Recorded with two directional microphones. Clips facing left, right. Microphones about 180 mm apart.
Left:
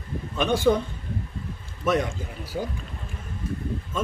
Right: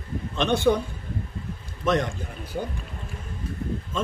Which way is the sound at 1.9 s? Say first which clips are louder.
Even; 10° left (ahead or behind).